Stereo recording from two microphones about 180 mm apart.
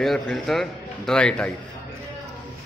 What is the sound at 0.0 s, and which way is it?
A man's voice, centre (ahead or behind).